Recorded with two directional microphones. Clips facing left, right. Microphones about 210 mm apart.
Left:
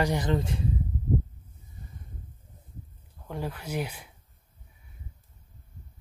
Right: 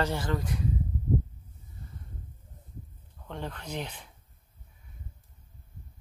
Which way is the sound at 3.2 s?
10° left (ahead or behind).